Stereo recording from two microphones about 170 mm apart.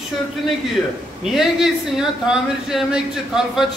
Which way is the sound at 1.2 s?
Centre (ahead or behind).